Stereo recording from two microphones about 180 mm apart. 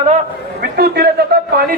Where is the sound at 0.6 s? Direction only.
60° right (ahead or behind).